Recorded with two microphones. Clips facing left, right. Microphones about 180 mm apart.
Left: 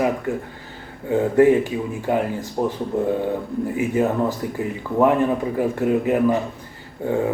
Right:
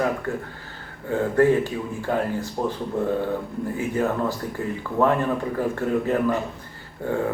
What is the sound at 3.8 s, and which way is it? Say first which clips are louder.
Speech: left 4 dB; 15° left (ahead or behind).